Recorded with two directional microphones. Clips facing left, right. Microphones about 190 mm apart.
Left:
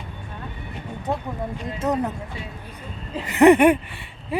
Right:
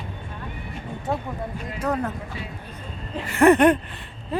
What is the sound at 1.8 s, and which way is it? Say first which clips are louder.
Speech: left 2 dB; 20° left (ahead or behind).